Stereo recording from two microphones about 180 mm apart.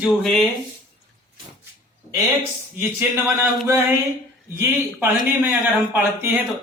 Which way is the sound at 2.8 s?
10° right (ahead or behind).